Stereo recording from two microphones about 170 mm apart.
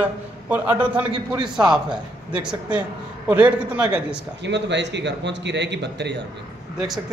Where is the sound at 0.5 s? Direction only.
10° right (ahead or behind).